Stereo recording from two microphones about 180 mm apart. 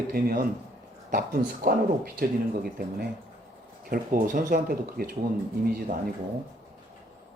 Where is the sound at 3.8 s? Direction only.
50° right (ahead or behind).